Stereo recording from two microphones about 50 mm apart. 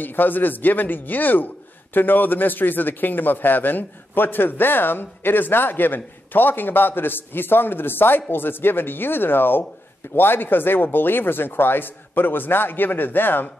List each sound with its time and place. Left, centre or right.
0.0 s a man's voice: left